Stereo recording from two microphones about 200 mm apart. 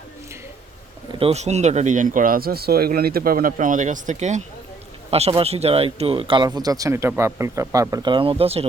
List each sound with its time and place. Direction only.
1.2 s speech: 35° right (ahead or behind)